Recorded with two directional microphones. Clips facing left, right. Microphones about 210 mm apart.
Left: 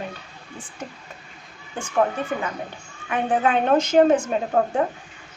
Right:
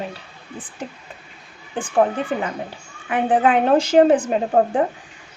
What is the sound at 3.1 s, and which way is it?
Speech, 30° right (ahead or behind).